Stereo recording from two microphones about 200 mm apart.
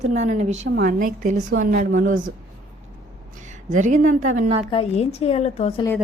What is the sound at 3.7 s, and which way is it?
Speech, 40° right (ahead or behind).